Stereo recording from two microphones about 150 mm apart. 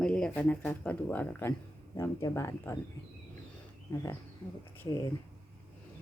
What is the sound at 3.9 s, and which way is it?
Speech, 20° left (ahead or behind).